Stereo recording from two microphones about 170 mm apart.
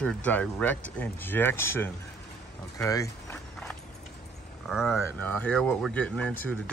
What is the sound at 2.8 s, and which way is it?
Walk, 20° left (ahead or behind).